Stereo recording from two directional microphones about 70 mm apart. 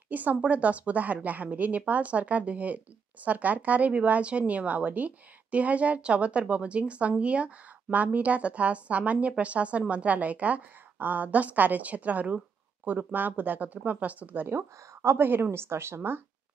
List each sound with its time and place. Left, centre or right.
0.1 s speech: right
14.5 s a woman's voice: right